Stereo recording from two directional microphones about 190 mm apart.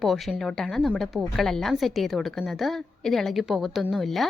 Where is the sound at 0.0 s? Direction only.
Centre (ahead or behind).